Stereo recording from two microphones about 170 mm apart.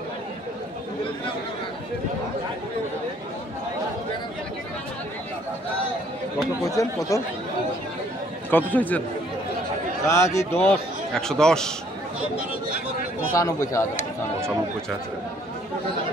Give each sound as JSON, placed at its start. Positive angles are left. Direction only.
{"t": 6.7, "sound": "a man's voice", "side_deg": 20}
{"t": 8.5, "sound": "a man's voice", "side_deg": 10}
{"t": 10.0, "sound": "a man's voice", "side_deg": 15}
{"t": 13.3, "sound": "a man's voice", "side_deg": 20}